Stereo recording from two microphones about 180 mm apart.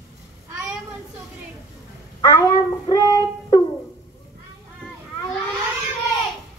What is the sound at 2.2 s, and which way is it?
Child singing, 25° left (ahead or behind).